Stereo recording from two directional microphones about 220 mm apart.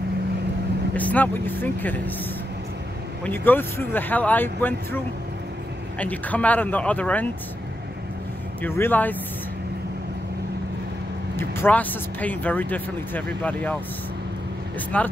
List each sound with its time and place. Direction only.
0.9 s speech: 5° left (ahead or behind)
3.3 s speech: 10° left (ahead or behind)
8.6 s speech: 10° left (ahead or behind)
11.3 s speech: 10° left (ahead or behind)
14.9 s speech: 5° left (ahead or behind)